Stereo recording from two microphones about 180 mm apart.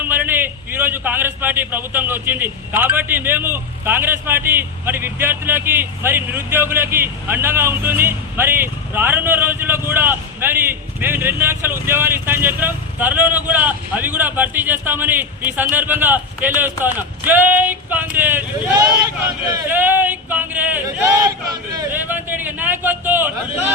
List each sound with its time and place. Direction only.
0.0 s a man's voice: 10° right (ahead or behind)
19.6 s a sound: 10° right (ahead or behind)
21.2 s a man's voice: 20° right (ahead or behind)